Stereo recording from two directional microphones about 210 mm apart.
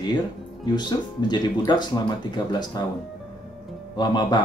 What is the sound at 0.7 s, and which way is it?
Speech, 20° left (ahead or behind).